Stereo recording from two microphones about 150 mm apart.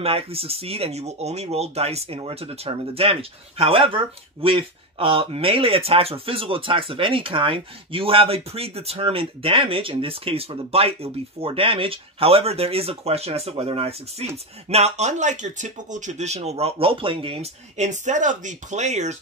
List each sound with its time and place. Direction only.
0.0 s speech: 40° right (ahead or behind)